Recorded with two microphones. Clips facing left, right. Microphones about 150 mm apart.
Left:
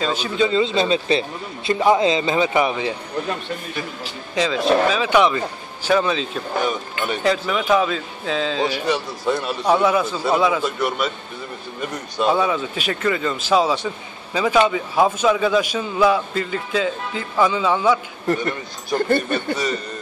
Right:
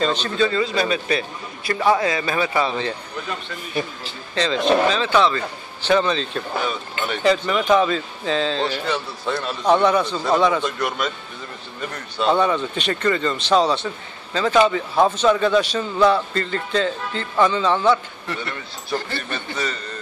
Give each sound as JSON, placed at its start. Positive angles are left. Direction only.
{"t": 0.0, "sound": "a man's voice", "side_deg": 10}
{"t": 0.5, "sound": "a man's voice", "side_deg": 25}
{"t": 4.4, "sound": "a man's voice", "side_deg": 5}
{"t": 18.2, "sound": "speech", "side_deg": 45}
{"t": 19.3, "sound": "a man's voice", "side_deg": 10}